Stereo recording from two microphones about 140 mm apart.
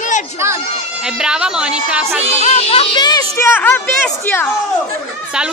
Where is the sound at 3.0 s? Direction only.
25° left (ahead or behind).